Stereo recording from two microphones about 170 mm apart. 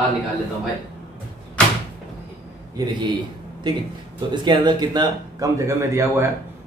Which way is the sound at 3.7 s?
25° right (ahead or behind).